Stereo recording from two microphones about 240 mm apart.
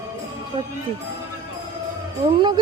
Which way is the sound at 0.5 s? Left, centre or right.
Centre.